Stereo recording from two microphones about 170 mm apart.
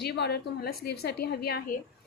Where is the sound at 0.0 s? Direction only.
70° left (ahead or behind).